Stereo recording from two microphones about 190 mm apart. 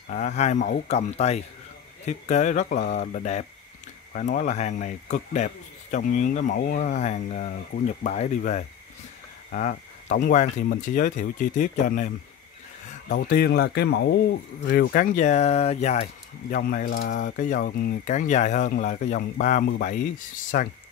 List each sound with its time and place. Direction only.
0.1 s speech: 40° left (ahead or behind)
13.1 s speech: 55° left (ahead or behind)